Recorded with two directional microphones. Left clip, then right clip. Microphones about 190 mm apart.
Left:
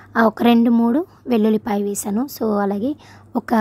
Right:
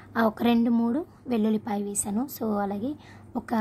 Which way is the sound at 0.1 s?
40° left (ahead or behind).